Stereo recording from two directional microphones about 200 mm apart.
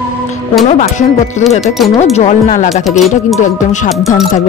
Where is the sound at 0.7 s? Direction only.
40° left (ahead or behind).